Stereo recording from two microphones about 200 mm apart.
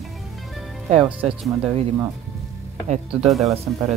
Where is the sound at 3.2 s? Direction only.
Centre (ahead or behind).